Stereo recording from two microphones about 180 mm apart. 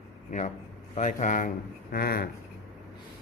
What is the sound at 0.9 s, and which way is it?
Speech, 45° left (ahead or behind).